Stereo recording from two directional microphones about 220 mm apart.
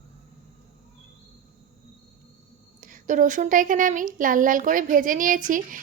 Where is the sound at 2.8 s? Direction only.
35° right (ahead or behind).